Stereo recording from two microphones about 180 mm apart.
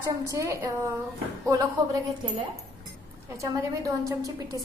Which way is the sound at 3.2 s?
15° right (ahead or behind).